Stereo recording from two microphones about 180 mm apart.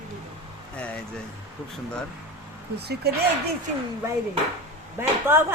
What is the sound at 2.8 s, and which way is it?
Speech, 65° right (ahead or behind).